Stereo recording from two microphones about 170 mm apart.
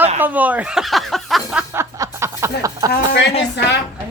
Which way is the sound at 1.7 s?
15° right (ahead or behind).